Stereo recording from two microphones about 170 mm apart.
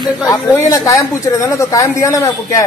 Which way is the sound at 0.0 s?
20° left (ahead or behind).